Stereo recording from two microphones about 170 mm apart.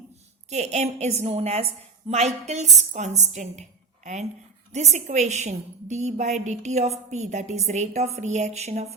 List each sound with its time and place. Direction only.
0.5 s a woman's voice: 40° right (ahead or behind)